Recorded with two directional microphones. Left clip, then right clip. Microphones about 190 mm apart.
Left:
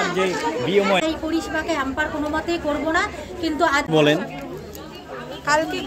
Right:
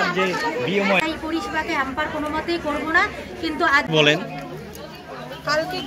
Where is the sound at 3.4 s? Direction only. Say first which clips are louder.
Right 1 dB; 90° left.